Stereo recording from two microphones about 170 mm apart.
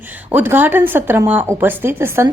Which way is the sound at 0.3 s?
10° right (ahead or behind).